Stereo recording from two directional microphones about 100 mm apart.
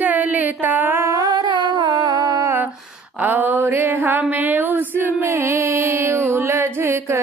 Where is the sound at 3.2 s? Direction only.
20° right (ahead or behind).